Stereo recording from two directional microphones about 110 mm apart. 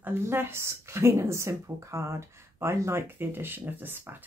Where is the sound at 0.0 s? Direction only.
20° right (ahead or behind).